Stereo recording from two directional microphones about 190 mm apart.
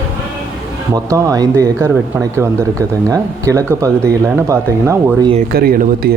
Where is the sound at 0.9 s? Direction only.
15° right (ahead or behind).